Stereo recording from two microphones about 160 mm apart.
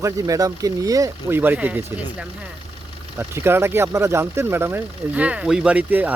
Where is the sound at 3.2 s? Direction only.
15° right (ahead or behind).